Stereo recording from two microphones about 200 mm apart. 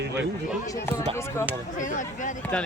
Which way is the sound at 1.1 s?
15° left (ahead or behind).